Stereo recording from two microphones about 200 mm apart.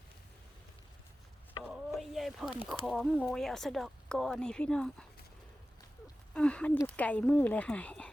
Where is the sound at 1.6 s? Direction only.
Centre (ahead or behind).